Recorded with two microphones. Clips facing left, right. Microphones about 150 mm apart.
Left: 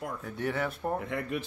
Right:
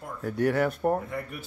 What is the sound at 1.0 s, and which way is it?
Speech, 90° left.